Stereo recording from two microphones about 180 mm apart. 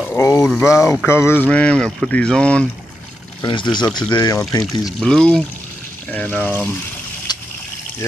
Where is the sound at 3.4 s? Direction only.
25° left (ahead or behind).